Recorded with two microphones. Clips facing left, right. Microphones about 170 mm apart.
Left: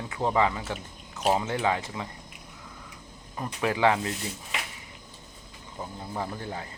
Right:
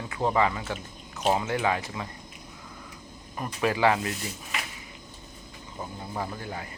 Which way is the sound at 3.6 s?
20° left (ahead or behind).